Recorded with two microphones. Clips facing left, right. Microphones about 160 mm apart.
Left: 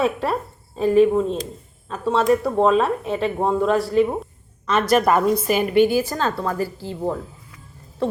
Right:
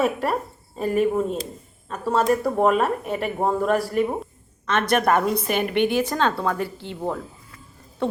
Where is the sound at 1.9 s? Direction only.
Centre (ahead or behind).